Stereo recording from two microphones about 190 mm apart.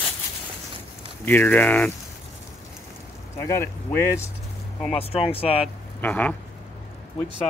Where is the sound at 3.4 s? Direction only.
10° left (ahead or behind).